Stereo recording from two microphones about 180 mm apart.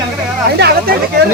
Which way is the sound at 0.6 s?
65° right (ahead or behind).